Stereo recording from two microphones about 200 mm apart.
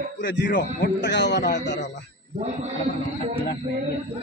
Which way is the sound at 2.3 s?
30° right (ahead or behind).